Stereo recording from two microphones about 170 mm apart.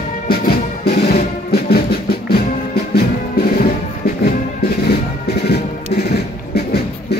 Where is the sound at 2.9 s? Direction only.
65° left (ahead or behind).